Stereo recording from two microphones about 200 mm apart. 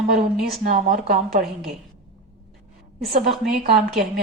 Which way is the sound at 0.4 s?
45° right (ahead or behind).